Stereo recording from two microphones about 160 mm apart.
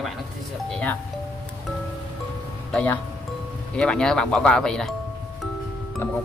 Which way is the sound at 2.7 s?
10° left (ahead or behind).